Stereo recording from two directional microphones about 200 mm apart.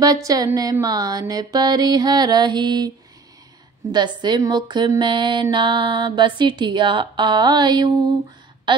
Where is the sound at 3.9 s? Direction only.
20° right (ahead or behind).